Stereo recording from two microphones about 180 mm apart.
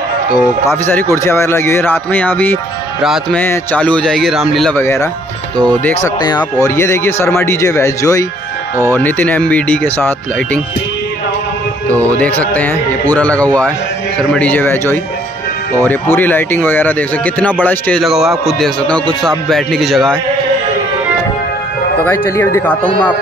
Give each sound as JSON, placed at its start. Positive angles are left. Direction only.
{"t": 0.3, "sound": "speech", "side_deg": 10}
{"t": 3.0, "sound": "speech", "side_deg": 0}
{"t": 3.3, "sound": "speech", "side_deg": 10}
{"t": 6.0, "sound": "speech", "side_deg": 20}
{"t": 12.2, "sound": "speech", "side_deg": 10}
{"t": 22.0, "sound": "speech", "side_deg": 10}